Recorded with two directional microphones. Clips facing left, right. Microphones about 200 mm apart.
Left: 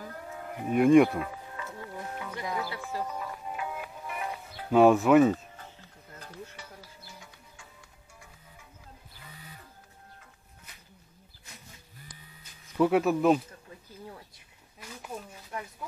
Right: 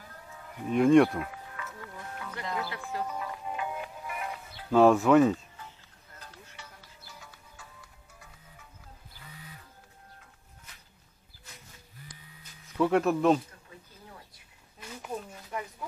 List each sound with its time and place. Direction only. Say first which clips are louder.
0.0 s a sound: left 8 dB; 60° left (ahead or behind)
0.7 s speech: left 1 dB; 5° left (ahead or behind)
1.6 s music: left 5 dB; 30° left (ahead or behind)
2.2 s music: even; 10° left (ahead or behind)
4.6 s speech: left 1 dB; 5° left (ahead or behind)
12.7 s speech: left 1 dB; 5° left (ahead or behind)